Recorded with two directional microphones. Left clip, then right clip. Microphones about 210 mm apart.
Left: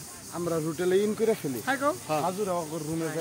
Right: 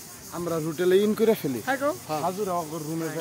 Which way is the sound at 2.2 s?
25° right (ahead or behind).